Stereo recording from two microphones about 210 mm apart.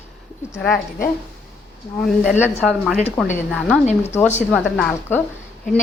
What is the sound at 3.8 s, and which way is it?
Speech, 30° left (ahead or behind).